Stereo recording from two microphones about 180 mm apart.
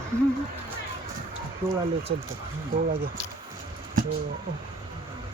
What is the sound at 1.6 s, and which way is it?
Speech, 10° right (ahead or behind).